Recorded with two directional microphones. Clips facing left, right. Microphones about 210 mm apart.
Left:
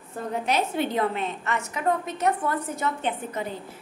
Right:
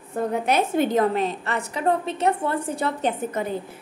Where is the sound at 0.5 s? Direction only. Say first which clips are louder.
Right 4 dB; 50° right (ahead or behind).